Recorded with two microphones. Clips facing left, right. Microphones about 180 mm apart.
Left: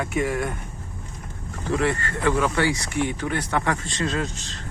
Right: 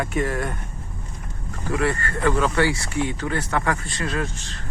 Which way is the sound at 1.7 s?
20° left (ahead or behind).